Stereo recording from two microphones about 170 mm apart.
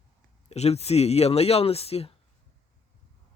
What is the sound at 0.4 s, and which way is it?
Speech, 40° left (ahead or behind).